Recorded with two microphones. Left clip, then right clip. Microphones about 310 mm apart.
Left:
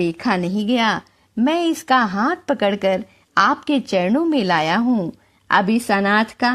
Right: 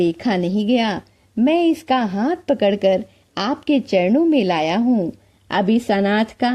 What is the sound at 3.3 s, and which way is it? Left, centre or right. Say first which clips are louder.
Speech: left 7 dB; left.